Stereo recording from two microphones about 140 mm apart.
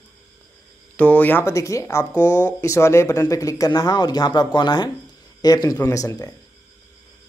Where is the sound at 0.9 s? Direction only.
10° left (ahead or behind).